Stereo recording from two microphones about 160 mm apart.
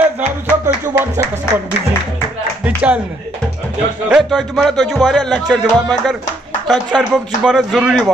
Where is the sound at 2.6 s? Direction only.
10° right (ahead or behind).